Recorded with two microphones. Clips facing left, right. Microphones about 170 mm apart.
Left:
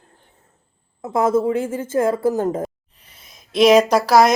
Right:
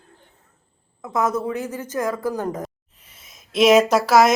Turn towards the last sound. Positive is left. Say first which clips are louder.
# left 1 dB
turn(degrees=-5)  # may be behind; listen again after turning